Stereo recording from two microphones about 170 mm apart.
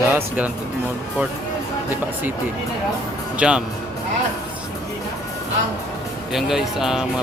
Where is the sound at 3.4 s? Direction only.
5° right (ahead or behind).